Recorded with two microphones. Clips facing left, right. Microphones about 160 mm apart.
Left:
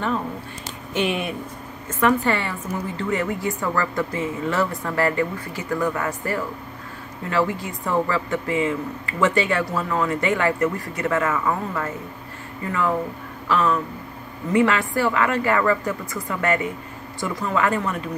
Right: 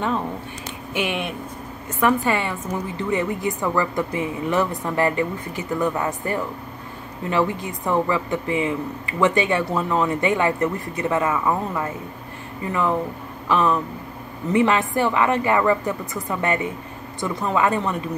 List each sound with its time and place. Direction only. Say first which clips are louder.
0.9 s speech: left 2 dB; centre (ahead or behind)
2.0 s a woman's voice: even; 15° right (ahead or behind)
13.5 s a woman's voice: right 1 dB; 15° right (ahead or behind)